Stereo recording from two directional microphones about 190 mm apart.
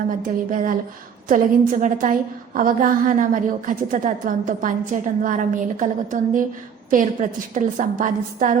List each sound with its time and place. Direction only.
0.2 s a woman's voice: 45° right (ahead or behind)